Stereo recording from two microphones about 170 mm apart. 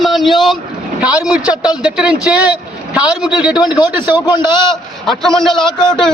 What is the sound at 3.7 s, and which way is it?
A man's voice, 25° left (ahead or behind).